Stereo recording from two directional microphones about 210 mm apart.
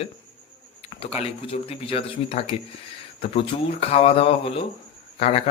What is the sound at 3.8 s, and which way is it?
Speech, 30° left (ahead or behind).